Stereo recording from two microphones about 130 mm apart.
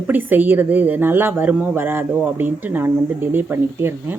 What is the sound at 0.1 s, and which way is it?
A woman's voice, 15° right (ahead or behind).